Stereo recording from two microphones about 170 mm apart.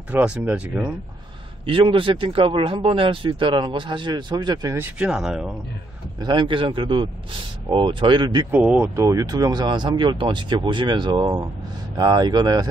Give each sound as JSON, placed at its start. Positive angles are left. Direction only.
{"t": 0.1, "sound": "speech", "side_deg": -10}
{"t": 1.7, "sound": "speech", "side_deg": -30}
{"t": 6.2, "sound": "speech", "side_deg": -30}
{"t": 8.5, "sound": "speech", "side_deg": -10}